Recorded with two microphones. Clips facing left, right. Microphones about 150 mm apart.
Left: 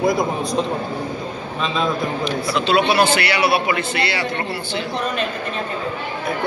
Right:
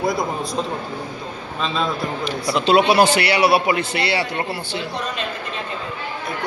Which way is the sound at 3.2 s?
35° right (ahead or behind).